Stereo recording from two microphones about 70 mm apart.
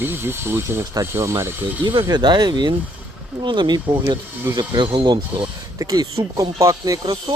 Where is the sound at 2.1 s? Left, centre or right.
Right.